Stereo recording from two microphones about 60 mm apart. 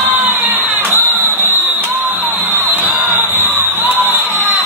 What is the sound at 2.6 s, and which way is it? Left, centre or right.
Music, right.